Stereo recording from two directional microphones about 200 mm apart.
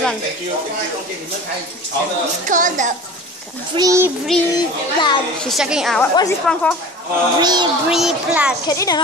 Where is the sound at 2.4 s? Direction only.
40° right (ahead or behind).